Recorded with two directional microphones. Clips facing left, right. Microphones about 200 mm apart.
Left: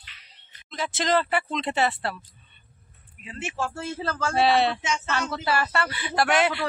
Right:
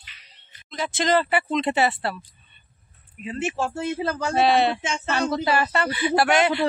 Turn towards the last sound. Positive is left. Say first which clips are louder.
# right 3 dB
turn(degrees=0)  # may be behind; listen again after turning